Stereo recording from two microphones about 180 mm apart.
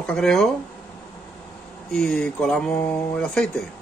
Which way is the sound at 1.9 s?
5° left (ahead or behind).